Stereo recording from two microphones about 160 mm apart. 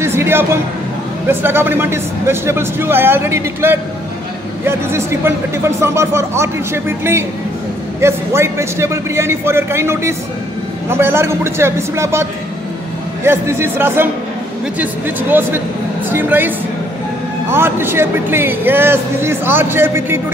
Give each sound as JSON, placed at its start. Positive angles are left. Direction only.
{"t": 0.0, "sound": "a man's voice", "side_deg": -15}